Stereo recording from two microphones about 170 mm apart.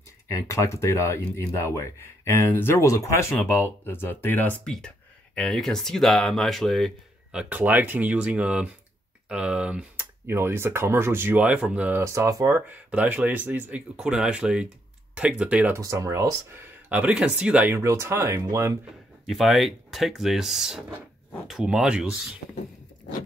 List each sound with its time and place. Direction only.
0.3 s speech: 20° left (ahead or behind); by 6.9 s centre (ahead or behind)
7.3 s speech: 10° right (ahead or behind)
12.0 s speech: 15° right (ahead or behind)
16.9 s speech: 5° right (ahead or behind)
19.2 s speech: centre (ahead or behind)